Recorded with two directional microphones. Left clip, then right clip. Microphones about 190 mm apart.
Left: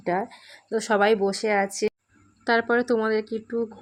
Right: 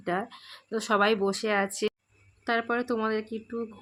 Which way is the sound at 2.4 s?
15° left (ahead or behind).